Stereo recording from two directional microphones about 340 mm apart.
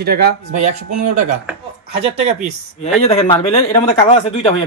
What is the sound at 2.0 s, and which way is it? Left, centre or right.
Speech, centre.